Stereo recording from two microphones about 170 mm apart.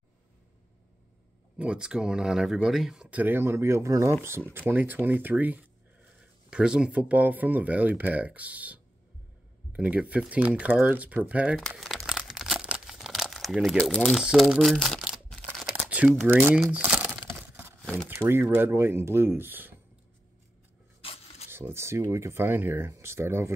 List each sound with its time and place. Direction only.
1.6 s speech: 5° right (ahead or behind)
12.1 s crumpling: centre (ahead or behind)
15.7 s computer keyboard: 10° right (ahead or behind)
16.3 s crumpling: 10° right (ahead or behind)
18.0 s speech: 15° right (ahead or behind)
21.0 s a sound: 35° left (ahead or behind)
21.5 s speech: 15° right (ahead or behind)